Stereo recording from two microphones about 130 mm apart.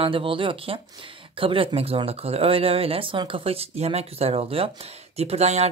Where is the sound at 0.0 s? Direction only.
45° right (ahead or behind).